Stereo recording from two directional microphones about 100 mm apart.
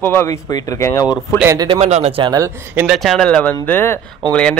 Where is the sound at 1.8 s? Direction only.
90° right.